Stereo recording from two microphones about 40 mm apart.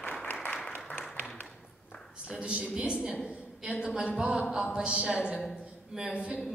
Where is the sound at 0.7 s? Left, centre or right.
Left.